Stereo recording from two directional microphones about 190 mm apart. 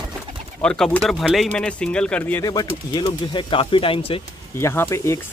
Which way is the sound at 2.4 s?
20° left (ahead or behind).